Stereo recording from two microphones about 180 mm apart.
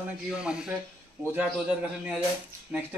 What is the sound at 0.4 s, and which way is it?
Speech, 5° right (ahead or behind).